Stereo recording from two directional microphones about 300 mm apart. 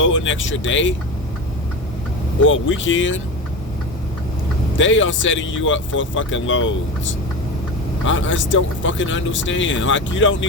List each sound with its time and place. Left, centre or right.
0.0 s speech: left
2.5 s speech: left
4.8 s speech: left
8.0 s speech: left